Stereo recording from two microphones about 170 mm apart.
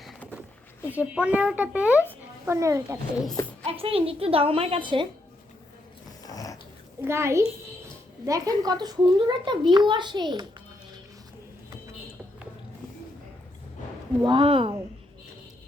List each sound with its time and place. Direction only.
0.0 s a sound: centre (ahead or behind)
0.9 s a child's voice: 10° right (ahead or behind)
3.7 s a woman's voice: 35° right (ahead or behind)
6.2 s dog: 20° left (ahead or behind)
7.0 s a child's voice: 15° right (ahead or behind)
14.3 s a woman's voice: 30° right (ahead or behind)